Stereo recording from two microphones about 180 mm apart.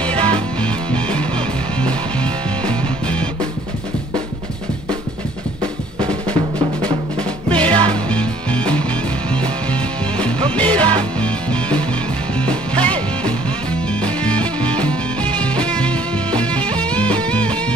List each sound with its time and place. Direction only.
0.1 s music: 30° right (ahead or behind)
5.6 s drum: 30° right (ahead or behind)
6.3 s music: 30° right (ahead or behind)
7.9 s music: 5° left (ahead or behind)
10.1 s music: 30° right (ahead or behind)
12.4 s music: 30° right (ahead or behind)
14.0 s music: 5° left (ahead or behind)